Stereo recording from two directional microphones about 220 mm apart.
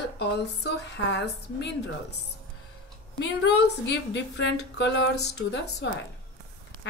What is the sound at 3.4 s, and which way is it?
A woman's voice, 50° left (ahead or behind).